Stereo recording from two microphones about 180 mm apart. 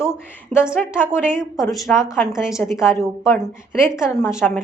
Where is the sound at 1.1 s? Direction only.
5° right (ahead or behind).